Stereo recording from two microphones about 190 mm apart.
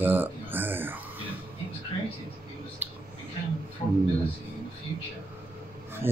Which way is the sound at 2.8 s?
10° right (ahead or behind).